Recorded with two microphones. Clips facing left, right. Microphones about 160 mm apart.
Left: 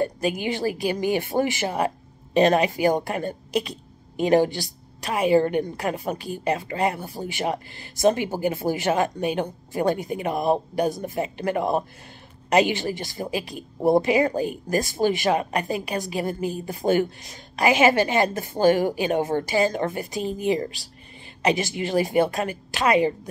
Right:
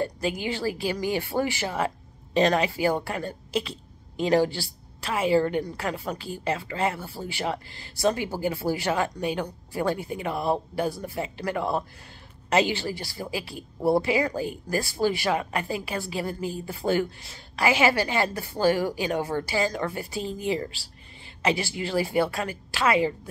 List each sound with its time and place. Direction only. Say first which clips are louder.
0.0 s a woman's voice: left 3 dB; 20° left (ahead or behind)